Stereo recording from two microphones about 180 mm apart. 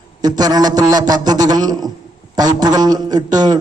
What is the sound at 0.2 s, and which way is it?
A man's voice, 20° right (ahead or behind).